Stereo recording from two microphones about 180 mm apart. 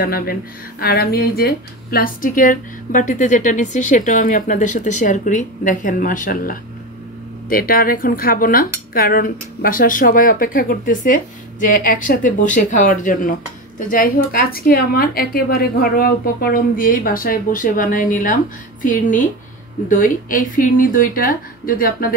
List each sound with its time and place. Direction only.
0.0 s speech: 55° left (ahead or behind)